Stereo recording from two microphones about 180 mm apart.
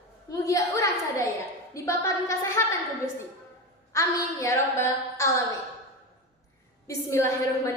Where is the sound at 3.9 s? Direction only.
15° left (ahead or behind).